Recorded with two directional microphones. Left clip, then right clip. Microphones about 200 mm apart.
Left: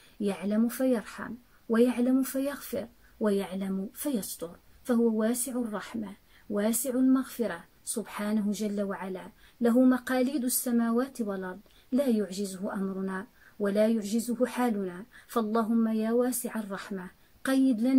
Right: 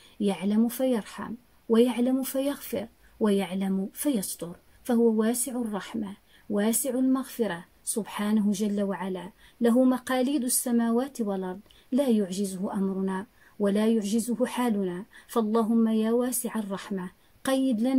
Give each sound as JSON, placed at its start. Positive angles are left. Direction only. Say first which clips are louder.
{"t": 0.2, "sound": "speech", "louder": "right 3 dB", "side_deg": -45}